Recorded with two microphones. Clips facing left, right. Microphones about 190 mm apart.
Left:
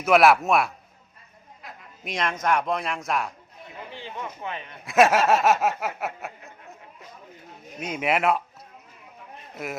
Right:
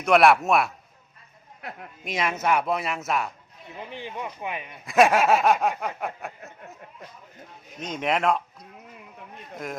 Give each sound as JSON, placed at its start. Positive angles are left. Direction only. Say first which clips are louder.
{"t": 0.0, "sound": "speech", "louder": "even", "side_deg": 0}
{"t": 2.0, "sound": "speech", "louder": "even", "side_deg": -5}
{"t": 3.8, "sound": "speech", "louder": "right 2 dB", "side_deg": -15}
{"t": 4.9, "sound": "speech", "louder": "even", "side_deg": 0}
{"t": 5.8, "sound": "snicker", "louder": "left 1 dB", "side_deg": 5}
{"t": 7.8, "sound": "speech", "louder": "left 1 dB", "side_deg": 10}